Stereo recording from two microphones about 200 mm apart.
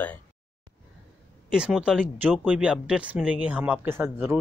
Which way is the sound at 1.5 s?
5° right (ahead or behind).